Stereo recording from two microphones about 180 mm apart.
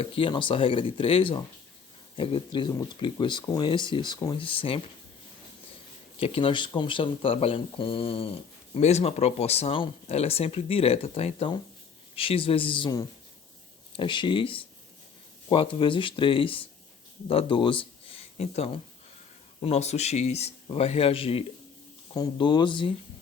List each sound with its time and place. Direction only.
0.0 s speech: 30° left (ahead or behind)
6.1 s speech: 30° left (ahead or behind)